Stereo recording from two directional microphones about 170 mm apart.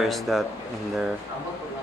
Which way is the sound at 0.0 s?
Centre (ahead or behind).